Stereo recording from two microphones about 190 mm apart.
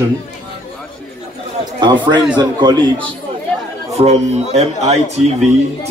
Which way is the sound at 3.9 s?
35° right (ahead or behind).